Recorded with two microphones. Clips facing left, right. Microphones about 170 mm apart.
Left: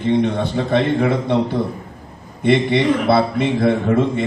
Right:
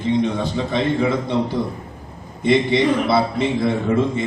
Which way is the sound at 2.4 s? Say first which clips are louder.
Left 1 dB; 60° left (ahead or behind).